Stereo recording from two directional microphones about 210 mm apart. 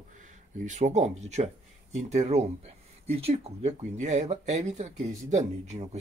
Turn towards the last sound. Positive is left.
turn(degrees=-30)  # may be behind; listen again after turning